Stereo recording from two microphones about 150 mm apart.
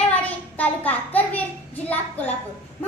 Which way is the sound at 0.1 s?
10° left (ahead or behind).